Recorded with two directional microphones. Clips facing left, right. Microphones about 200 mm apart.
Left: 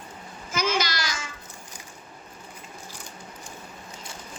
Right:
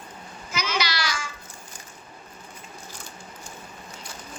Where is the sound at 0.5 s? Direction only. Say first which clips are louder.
Left 2 dB; 50° left (ahead or behind).